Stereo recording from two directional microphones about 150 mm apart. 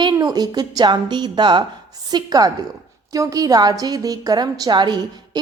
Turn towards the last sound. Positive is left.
turn(degrees=-30)  # may be behind; listen again after turning